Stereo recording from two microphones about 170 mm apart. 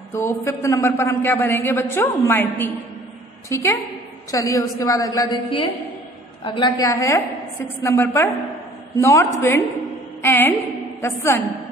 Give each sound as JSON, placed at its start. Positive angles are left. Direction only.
{"t": 0.1, "sound": "a man's voice", "side_deg": 15}